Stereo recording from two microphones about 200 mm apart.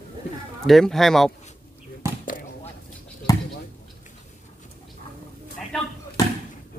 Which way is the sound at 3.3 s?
20° left (ahead or behind).